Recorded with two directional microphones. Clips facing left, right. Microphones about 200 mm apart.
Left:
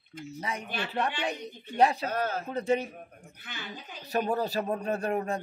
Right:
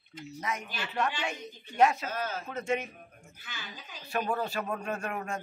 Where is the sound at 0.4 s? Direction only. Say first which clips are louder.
Left 2 dB; 30° left (ahead or behind).